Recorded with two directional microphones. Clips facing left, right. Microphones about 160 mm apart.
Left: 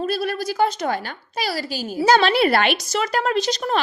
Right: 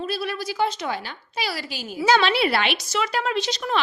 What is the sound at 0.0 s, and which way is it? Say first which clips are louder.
A woman's voice: left 4 dB; 45° left (ahead or behind).